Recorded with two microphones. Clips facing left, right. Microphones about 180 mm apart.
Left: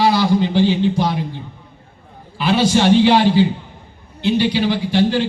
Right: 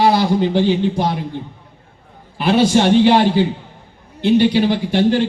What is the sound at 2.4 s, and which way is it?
A man's voice, 55° right (ahead or behind).